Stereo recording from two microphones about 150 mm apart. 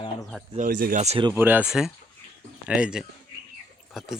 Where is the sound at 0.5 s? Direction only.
65° right (ahead or behind).